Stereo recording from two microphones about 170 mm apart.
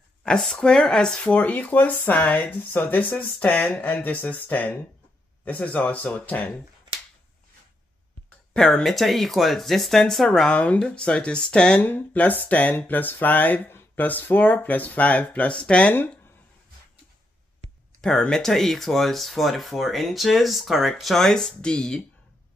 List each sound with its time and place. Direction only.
0.2 s speech: 5° left (ahead or behind)
8.5 s speech: 5° left (ahead or behind)
17.6 s a sound: 40° right (ahead or behind)
18.0 s speech: 5° left (ahead or behind)